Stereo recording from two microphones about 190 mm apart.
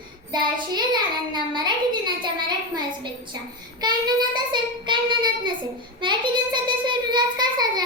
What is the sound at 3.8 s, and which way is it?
A child's voice, 20° right (ahead or behind).